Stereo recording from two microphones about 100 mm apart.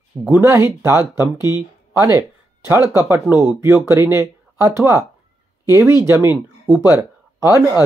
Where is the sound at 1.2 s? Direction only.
40° left (ahead or behind).